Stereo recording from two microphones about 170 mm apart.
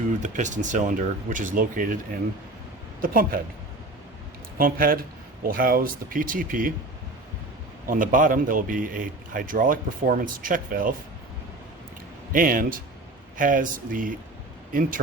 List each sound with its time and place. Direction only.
0.2 s a man's voice: 45° right (ahead or behind)
3.0 s speech: 55° right (ahead or behind)
4.5 s speech: 60° right (ahead or behind)
7.9 s a man's voice: 50° right (ahead or behind)
12.3 s a man's voice: 55° right (ahead or behind)